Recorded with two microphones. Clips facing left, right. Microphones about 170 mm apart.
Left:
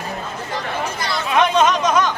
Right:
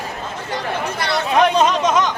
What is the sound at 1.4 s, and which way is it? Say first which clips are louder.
Chatter: even; 35° right (ahead or behind).